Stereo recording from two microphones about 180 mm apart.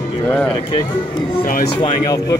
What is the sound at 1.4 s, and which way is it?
Speech, 50° left (ahead or behind).